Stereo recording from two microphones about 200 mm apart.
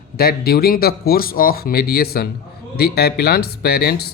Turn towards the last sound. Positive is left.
turn(degrees=50)  # may be behind; listen again after turning